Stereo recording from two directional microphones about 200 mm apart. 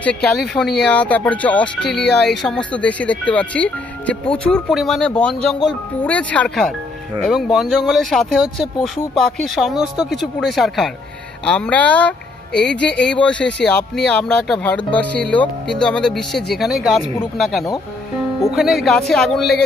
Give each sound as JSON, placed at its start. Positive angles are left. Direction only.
{"t": 0.0, "sound": "speech", "side_deg": 5}
{"t": 1.8, "sound": "speech", "side_deg": 55}
{"t": 2.0, "sound": "speech", "side_deg": 5}